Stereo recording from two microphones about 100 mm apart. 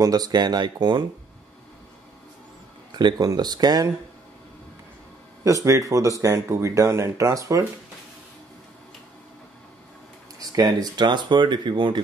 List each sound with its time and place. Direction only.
0.0 s speech: 40° right (ahead or behind)
3.0 s speech: 45° right (ahead or behind)
5.4 s speech: 35° right (ahead or behind)
10.5 s speech: 40° right (ahead or behind)